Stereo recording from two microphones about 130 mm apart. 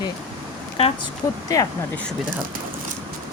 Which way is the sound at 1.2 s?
25° left (ahead or behind).